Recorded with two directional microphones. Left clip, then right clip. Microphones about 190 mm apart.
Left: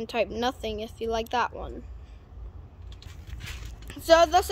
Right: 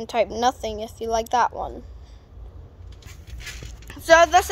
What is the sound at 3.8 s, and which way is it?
Speech, 10° left (ahead or behind).